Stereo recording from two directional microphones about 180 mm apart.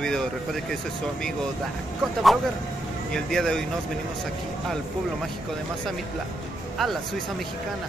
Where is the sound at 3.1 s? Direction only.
5° left (ahead or behind).